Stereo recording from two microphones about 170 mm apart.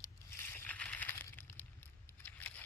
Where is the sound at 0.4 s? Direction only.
10° left (ahead or behind).